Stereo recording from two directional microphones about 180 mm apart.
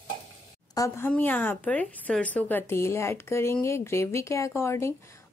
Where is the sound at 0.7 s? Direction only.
15° left (ahead or behind).